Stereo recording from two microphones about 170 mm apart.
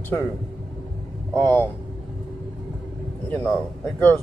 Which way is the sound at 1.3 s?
10° left (ahead or behind).